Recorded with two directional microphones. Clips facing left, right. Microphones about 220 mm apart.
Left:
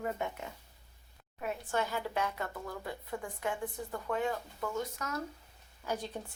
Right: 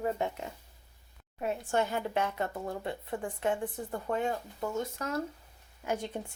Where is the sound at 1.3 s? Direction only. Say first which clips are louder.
Right 4 dB; 30° right (ahead or behind).